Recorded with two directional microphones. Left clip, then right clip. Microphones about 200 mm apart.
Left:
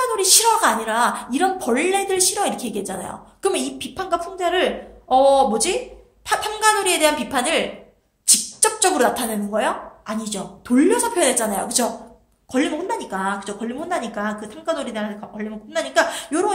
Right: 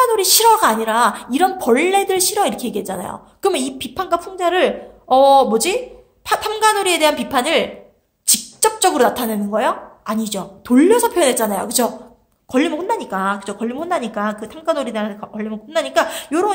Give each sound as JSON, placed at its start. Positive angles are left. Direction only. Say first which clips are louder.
{"t": 0.0, "sound": "a woman's voice", "louder": "right 5 dB", "side_deg": -40}